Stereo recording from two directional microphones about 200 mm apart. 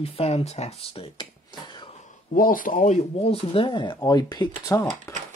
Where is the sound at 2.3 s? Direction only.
45° left (ahead or behind); by 5.1 s 15° left (ahead or behind).